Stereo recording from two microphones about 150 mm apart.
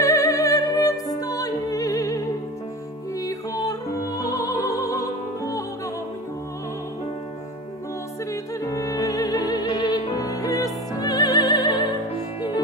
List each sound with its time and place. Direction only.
0.0 s music: 20° left (ahead or behind)
8.3 s music: 20° left (ahead or behind)